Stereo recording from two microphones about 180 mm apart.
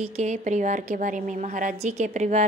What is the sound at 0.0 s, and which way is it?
A woman's voice, 40° right (ahead or behind).